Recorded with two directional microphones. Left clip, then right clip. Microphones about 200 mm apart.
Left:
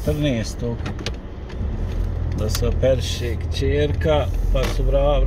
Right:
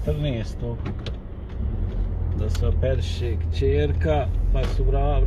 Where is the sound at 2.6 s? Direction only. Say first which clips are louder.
Left 8 dB; 20° left (ahead or behind).